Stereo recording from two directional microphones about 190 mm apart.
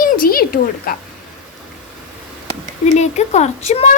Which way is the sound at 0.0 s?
50° left (ahead or behind).